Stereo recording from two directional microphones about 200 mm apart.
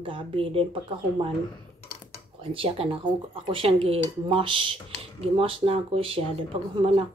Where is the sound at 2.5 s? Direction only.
30° right (ahead or behind).